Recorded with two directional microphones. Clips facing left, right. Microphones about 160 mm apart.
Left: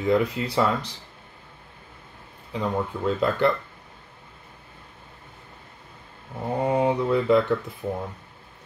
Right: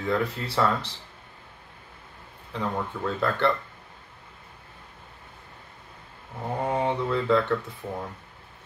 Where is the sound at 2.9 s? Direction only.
20° left (ahead or behind).